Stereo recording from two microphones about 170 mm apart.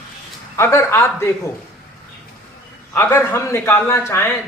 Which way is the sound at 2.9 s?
15° left (ahead or behind).